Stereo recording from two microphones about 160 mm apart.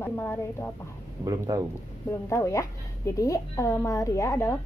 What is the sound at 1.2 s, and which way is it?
Speech, 20° right (ahead or behind).